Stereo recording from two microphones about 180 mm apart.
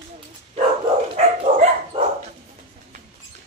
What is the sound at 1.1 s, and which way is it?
Dog, 35° right (ahead or behind).